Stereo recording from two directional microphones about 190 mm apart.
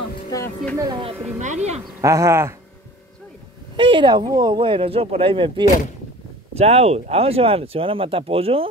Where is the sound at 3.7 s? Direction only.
25° right (ahead or behind).